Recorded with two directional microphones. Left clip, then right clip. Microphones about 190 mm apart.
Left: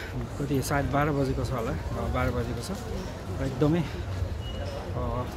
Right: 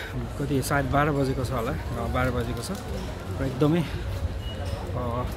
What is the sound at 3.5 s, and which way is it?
Speech, 15° right (ahead or behind).